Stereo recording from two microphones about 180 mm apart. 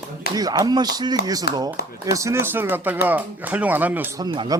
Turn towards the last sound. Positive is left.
turn(degrees=-25)  # may be behind; listen again after turning